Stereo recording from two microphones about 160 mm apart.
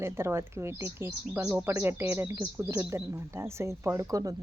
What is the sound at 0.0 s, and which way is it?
Speech, 15° right (ahead or behind).